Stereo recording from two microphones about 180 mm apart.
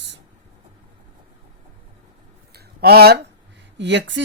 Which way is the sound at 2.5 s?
60° right (ahead or behind).